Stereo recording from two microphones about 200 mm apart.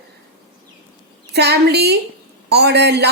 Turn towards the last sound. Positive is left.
turn(degrees=-55)  # may be behind; listen again after turning